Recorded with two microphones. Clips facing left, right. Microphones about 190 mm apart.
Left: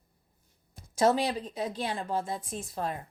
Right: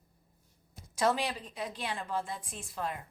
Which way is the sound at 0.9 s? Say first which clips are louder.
Left 5 dB; 40° left (ahead or behind).